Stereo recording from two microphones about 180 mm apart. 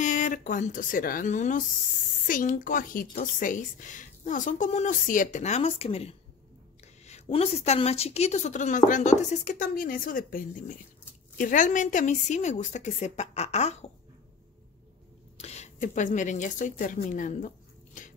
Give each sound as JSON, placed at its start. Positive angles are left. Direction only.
{"t": 0.0, "sound": "a woman's voice", "side_deg": 45}
{"t": 15.3, "sound": "speech", "side_deg": 35}